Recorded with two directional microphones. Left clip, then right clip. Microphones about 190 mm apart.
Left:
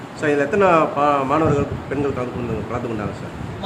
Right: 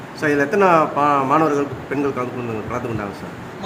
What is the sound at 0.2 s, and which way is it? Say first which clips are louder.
A man's voice: right 1 dB; 20° right (ahead or behind).